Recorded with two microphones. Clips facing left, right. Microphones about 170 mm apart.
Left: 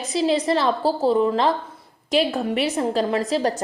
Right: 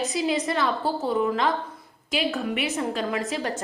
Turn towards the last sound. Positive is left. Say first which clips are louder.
# left 6 dB
turn(degrees=35)  # may be behind; listen again after turning